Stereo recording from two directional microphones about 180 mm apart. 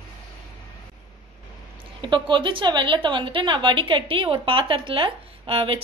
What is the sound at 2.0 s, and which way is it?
A woman's voice, 25° right (ahead or behind).